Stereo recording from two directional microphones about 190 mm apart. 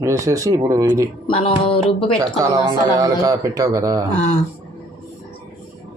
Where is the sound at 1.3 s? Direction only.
30° left (ahead or behind).